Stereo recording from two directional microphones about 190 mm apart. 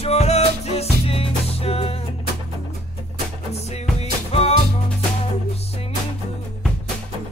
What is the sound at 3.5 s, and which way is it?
Music, 35° left (ahead or behind).